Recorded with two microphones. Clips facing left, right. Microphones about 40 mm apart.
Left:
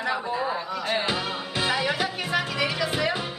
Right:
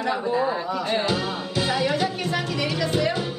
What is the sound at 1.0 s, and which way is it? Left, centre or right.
Music, centre.